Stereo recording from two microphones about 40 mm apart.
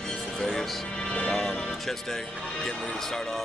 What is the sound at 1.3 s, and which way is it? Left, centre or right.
Music, left.